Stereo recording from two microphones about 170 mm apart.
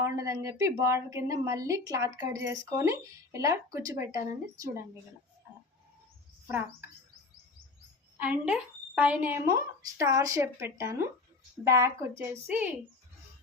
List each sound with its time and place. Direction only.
0.0 s speech: 20° right (ahead or behind)
8.2 s speech: 10° right (ahead or behind)